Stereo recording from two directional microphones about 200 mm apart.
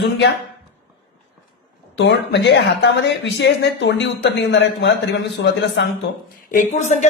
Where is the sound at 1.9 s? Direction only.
60° left (ahead or behind).